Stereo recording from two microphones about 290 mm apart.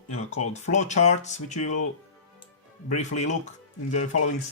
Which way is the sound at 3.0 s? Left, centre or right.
Left.